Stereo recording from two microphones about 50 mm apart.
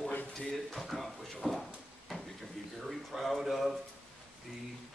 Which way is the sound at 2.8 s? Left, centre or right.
Centre.